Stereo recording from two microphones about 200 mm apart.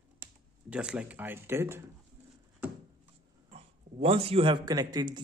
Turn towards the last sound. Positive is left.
turn(degrees=-20)  # may be behind; listen again after turning